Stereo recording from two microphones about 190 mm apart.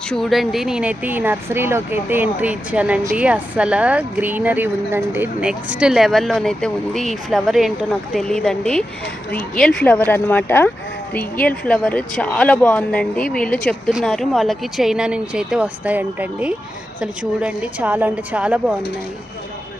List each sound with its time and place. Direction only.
0.1 s a woman's voice: centre (ahead or behind)